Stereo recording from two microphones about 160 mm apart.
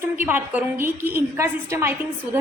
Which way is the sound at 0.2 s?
10° right (ahead or behind).